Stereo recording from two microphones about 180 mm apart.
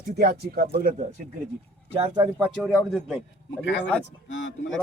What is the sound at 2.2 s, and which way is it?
Speech, 10° right (ahead or behind).